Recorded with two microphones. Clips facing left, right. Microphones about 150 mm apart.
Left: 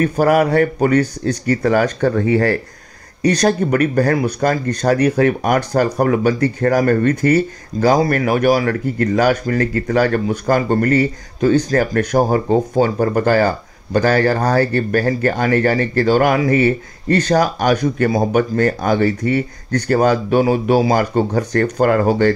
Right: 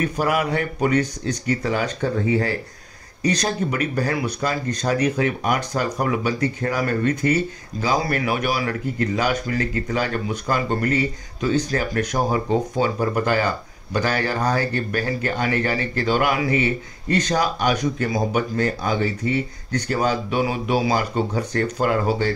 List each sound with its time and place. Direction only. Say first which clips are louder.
0.0 s speech: left 8 dB; 45° left (ahead or behind)